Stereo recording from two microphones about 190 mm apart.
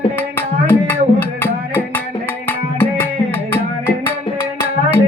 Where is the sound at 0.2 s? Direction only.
10° left (ahead or behind).